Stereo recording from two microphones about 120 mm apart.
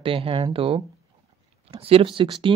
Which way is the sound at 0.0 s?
50° right (ahead or behind).